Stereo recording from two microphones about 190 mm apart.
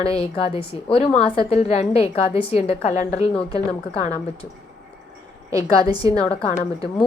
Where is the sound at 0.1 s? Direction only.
30° left (ahead or behind).